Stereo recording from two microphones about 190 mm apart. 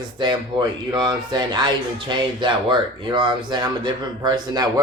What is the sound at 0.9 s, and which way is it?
Speech, 20° right (ahead or behind).